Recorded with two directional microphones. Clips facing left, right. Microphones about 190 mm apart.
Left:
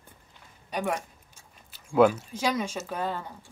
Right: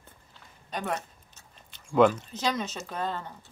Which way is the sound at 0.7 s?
10° left (ahead or behind).